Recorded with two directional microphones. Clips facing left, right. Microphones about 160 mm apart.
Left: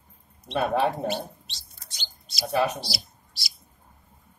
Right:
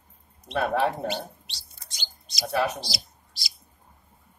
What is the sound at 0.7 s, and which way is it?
Speech, 15° left (ahead or behind).